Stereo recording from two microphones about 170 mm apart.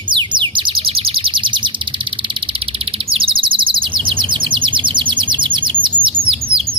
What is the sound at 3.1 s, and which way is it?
Chirp, 30° right (ahead or behind).